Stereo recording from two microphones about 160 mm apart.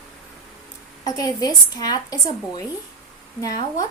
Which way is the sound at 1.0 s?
25° left (ahead or behind).